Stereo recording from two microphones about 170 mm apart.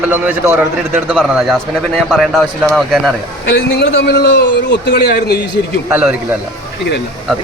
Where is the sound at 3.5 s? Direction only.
85° left.